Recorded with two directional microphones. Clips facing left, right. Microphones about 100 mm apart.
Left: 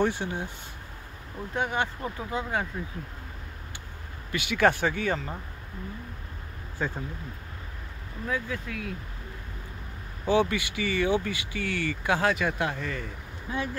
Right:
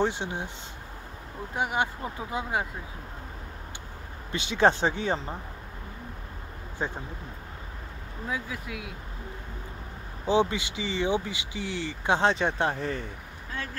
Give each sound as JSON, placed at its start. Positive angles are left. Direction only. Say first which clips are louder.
{"t": 0.0, "sound": "speech", "louder": "left 1 dB", "side_deg": -20}
{"t": 1.5, "sound": "speech", "louder": "right 1 dB", "side_deg": -15}
{"t": 4.3, "sound": "speech", "louder": "right 1 dB", "side_deg": -25}
{"t": 6.8, "sound": "speech", "louder": "left 1 dB", "side_deg": -20}
{"t": 8.3, "sound": "speech", "louder": "left 2 dB", "side_deg": -15}
{"t": 10.2, "sound": "speech", "louder": "even", "side_deg": -20}